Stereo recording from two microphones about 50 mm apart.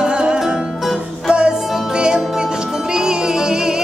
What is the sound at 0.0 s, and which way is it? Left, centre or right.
Music, centre.